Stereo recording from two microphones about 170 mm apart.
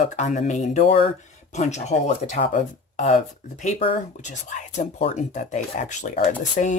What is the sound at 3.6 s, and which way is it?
Speech, 35° left (ahead or behind).